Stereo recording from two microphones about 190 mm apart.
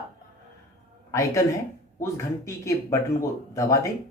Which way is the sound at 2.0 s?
15° left (ahead or behind).